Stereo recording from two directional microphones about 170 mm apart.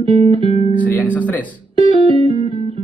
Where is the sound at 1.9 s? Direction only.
30° right (ahead or behind).